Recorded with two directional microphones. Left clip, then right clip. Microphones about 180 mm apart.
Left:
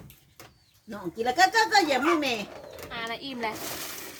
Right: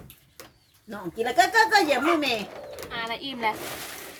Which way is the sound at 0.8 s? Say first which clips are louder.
Even; 10° right (ahead or behind).